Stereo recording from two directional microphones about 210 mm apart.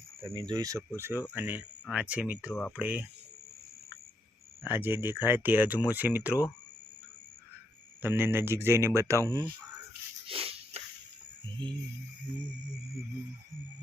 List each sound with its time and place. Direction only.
0.3 s speech: 20° right (ahead or behind)
2.5 s speech: 5° left (ahead or behind)
2.7 s speech: 10° right (ahead or behind)
4.7 s speech: 10° right (ahead or behind)
8.0 s speech: 10° right (ahead or behind)
10.2 s a sound: 25° right (ahead or behind)
11.6 s music: 20° right (ahead or behind)